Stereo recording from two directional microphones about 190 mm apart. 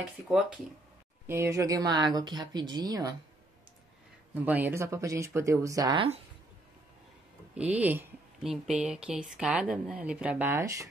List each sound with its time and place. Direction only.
1.2 s speech: 15° right (ahead or behind)
4.3 s speech: 10° right (ahead or behind); by 6.2 s 30° right (ahead or behind)
7.5 s speech: 5° right (ahead or behind)